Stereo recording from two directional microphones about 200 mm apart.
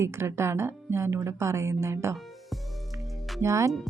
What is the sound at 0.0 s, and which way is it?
Speech, 15° right (ahead or behind).